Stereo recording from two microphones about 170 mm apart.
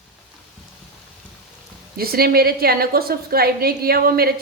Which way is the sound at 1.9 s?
60° right (ahead or behind).